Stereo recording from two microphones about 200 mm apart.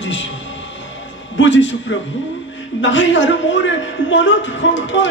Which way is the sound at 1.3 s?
65° left (ahead or behind).